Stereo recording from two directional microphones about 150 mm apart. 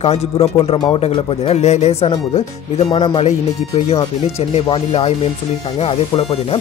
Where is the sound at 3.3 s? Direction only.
45° left (ahead or behind).